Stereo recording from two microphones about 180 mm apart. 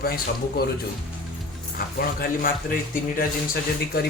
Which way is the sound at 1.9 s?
55° left (ahead or behind).